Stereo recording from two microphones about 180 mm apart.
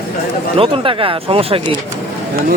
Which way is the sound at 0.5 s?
30° right (ahead or behind).